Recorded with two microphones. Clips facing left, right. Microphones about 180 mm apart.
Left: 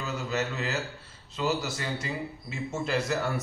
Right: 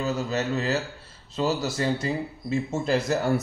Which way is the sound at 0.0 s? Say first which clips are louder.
Right 5 dB; 35° right (ahead or behind).